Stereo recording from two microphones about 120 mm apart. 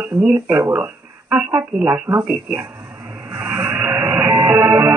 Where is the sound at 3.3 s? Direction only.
20° right (ahead or behind).